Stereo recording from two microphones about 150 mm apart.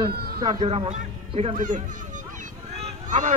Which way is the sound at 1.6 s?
60° right (ahead or behind).